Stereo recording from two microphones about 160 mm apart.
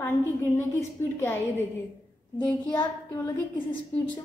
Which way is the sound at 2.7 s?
25° left (ahead or behind).